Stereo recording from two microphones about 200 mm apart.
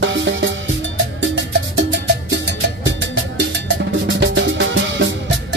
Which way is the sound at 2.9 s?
65° right (ahead or behind).